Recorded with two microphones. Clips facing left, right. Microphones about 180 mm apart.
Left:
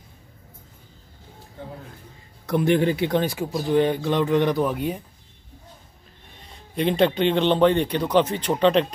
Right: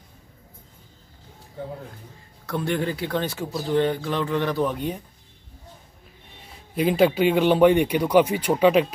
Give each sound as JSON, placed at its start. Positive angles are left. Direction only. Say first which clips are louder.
{"t": 2.4, "sound": "speech", "louder": "left 6 dB", "side_deg": 20}
{"t": 4.6, "sound": "speech", "louder": "left 2 dB", "side_deg": 5}
{"t": 6.4, "sound": "speech", "louder": "right 1 dB", "side_deg": -5}